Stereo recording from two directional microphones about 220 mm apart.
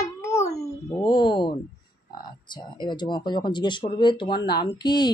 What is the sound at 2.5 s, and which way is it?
Speech, 20° left (ahead or behind).